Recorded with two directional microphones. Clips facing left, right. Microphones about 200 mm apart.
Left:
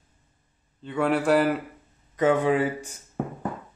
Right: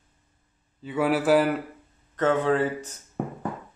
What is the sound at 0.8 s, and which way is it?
Speech, 5° right (ahead or behind).